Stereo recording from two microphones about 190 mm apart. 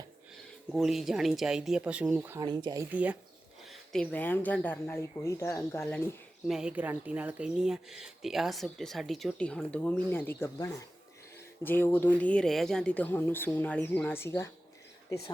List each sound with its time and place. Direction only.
0.7 s speech: centre (ahead or behind)
2.4 s speech: 25° right (ahead or behind)
2.9 s speech: 10° right (ahead or behind); by 6.1 s 15° left (ahead or behind)
6.5 s speech: 5° right (ahead or behind); by 14.5 s 15° left (ahead or behind)